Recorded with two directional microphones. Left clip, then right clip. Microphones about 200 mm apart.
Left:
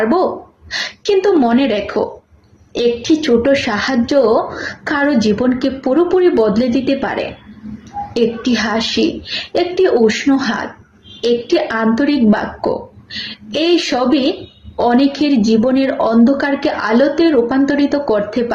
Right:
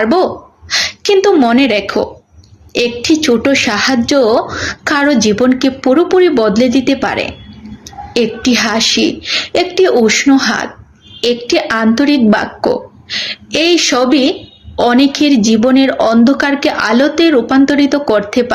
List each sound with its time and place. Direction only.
0.0 s a woman's voice: 25° right (ahead or behind)